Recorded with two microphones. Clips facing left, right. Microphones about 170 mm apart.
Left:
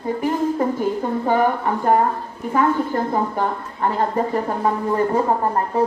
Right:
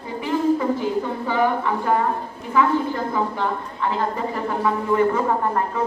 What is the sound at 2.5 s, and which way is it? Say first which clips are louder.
A woman's voice: left 1 dB; 45° left (ahead or behind).